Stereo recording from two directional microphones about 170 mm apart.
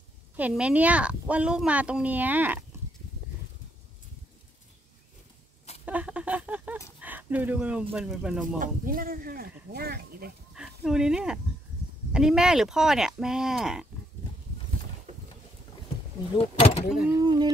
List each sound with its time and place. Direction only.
0.4 s speech: 5° right (ahead or behind)
5.9 s a sound: 10° right (ahead or behind)
7.9 s speech: 5° right (ahead or behind)
8.5 s speech: 55° right (ahead or behind)
10.5 s speech: 5° right (ahead or behind)
16.3 s speech: 35° left (ahead or behind)
17.2 s music: 25° right (ahead or behind)